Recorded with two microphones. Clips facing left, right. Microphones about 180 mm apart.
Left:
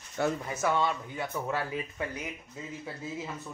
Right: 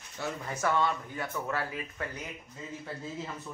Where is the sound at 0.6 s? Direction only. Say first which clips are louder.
Even; 15° left (ahead or behind).